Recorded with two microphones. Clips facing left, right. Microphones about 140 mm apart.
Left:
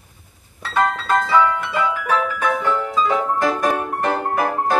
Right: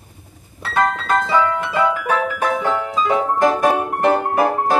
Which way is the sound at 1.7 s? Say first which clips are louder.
Right 2 dB; 40° right (ahead or behind).